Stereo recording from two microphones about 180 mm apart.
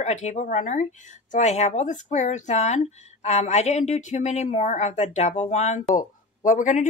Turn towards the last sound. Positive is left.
turn(degrees=45)  # may be behind; listen again after turning